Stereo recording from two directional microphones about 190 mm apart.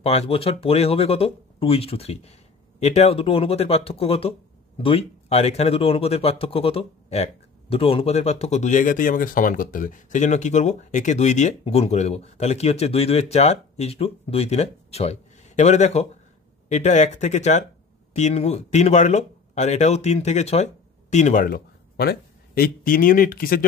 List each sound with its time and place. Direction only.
0.0 s speech: 35° left (ahead or behind); by 23.6 s 50° left (ahead or behind)